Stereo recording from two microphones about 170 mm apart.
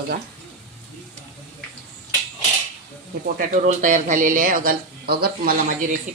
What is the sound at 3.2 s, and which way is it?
Speech, 55° right (ahead or behind).